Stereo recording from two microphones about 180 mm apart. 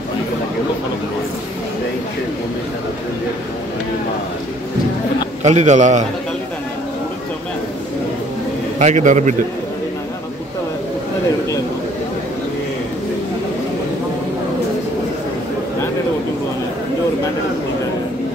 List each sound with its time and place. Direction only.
5.4 s a man's voice: 40° right (ahead or behind)
8.7 s a man's voice: 40° right (ahead or behind)